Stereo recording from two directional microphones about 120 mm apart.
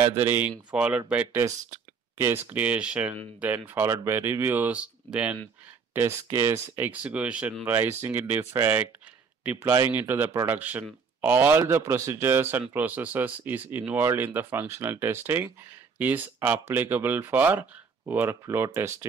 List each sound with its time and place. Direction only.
0.0 s speech: 20° right (ahead or behind)
5.9 s speech: 20° right (ahead or behind)